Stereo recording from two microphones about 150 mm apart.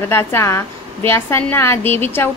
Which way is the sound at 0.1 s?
15° left (ahead or behind).